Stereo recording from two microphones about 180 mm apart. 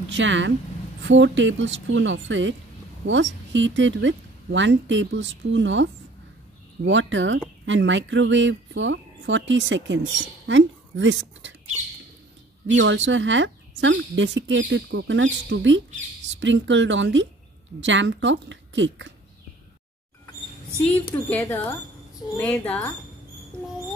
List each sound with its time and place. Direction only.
0.1 s speech: 90° right
12.6 s speech: 90° right
20.8 s speech: 10° left (ahead or behind)